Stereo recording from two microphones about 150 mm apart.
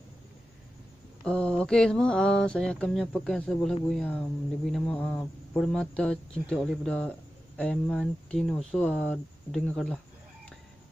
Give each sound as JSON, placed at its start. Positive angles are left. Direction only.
{"t": 1.2, "sound": "speech", "side_deg": 5}